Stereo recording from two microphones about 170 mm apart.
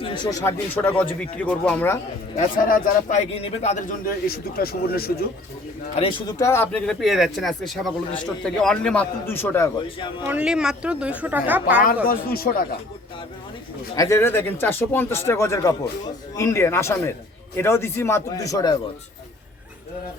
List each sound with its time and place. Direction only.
0.0 s speech: 25° left (ahead or behind)
2.3 s a man's voice: 50° left (ahead or behind)
4.0 s a man's voice: 65° left (ahead or behind)
6.0 s speech: 30° left (ahead or behind)
6.4 s speech: 15° left (ahead or behind)
6.8 s speech: centre (ahead or behind)
10.2 s speech: 5° right (ahead or behind)
12.0 s a man's voice: 60° left (ahead or behind)
13.9 s speech: 20° left (ahead or behind)